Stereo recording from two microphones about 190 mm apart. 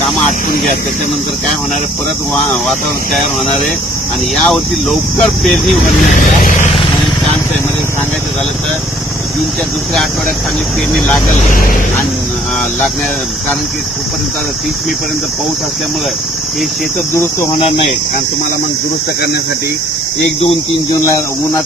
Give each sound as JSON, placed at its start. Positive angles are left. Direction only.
{"t": 2.3, "sound": "speech", "side_deg": 0}
{"t": 4.4, "sound": "speech", "side_deg": 5}
{"t": 6.0, "sound": "speech", "side_deg": 40}
{"t": 17.1, "sound": "cricket", "side_deg": 15}
{"t": 17.6, "sound": "speech", "side_deg": 30}